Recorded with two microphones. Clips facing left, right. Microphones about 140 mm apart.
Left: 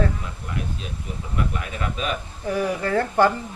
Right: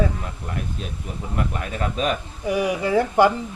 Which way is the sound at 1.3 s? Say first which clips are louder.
Right 1 dB; 40° right (ahead or behind).